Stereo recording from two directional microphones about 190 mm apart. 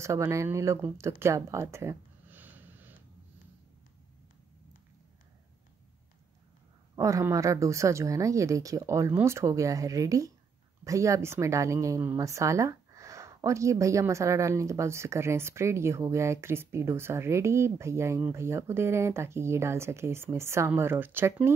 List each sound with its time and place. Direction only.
0.0 s speech: 15° right (ahead or behind)
7.0 s a woman's voice: 15° right (ahead or behind)